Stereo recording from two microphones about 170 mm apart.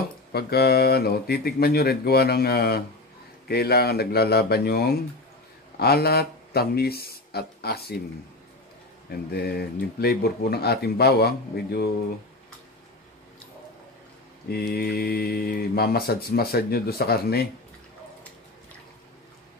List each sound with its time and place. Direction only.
0.3 s speech: 70° left (ahead or behind)
9.1 s speech: 70° left (ahead or behind)
14.5 s speech: 65° left (ahead or behind)